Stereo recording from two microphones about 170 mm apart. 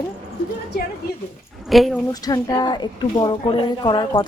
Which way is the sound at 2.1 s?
25° left (ahead or behind).